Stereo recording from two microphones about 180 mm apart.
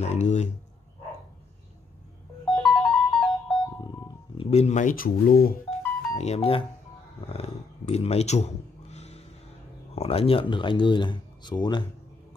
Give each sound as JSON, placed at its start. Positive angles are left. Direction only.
{"t": 0.0, "sound": "speech", "side_deg": 40}
{"t": 2.5, "sound": "music", "side_deg": 0}
{"t": 4.4, "sound": "speech", "side_deg": 35}
{"t": 6.1, "sound": "speech", "side_deg": 35}
{"t": 7.2, "sound": "a sound", "side_deg": 35}
{"t": 9.9, "sound": "speech", "side_deg": 35}